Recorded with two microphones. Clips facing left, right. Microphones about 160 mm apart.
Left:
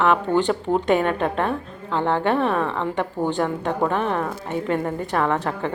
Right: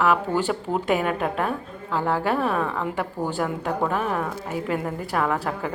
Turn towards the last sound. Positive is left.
turn(degrees=-5)  # may be behind; listen again after turning